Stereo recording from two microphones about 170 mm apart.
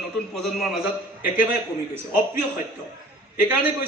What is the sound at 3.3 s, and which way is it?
Speech, 10° right (ahead or behind).